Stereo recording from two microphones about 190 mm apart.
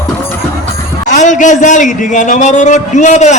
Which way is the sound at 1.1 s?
40° left (ahead or behind).